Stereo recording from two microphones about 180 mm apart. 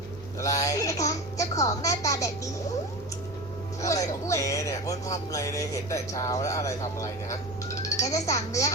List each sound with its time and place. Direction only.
0.3 s a child's voice: 20° left (ahead or behind)
3.8 s speech: 15° left (ahead or behind)